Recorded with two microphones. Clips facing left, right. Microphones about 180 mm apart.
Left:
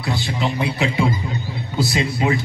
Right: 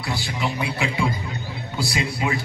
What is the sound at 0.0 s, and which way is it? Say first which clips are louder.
A man's voice: left 4 dB; 20° left (ahead or behind).